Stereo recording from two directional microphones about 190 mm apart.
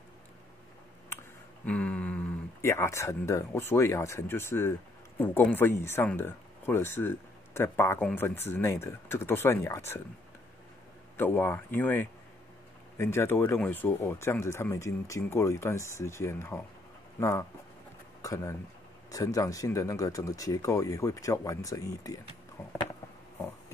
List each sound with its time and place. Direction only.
1.7 s speech: 5° left (ahead or behind)
11.1 s speech: 10° left (ahead or behind)